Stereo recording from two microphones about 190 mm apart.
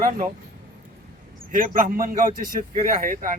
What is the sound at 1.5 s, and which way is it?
A man's voice, 45° right (ahead or behind).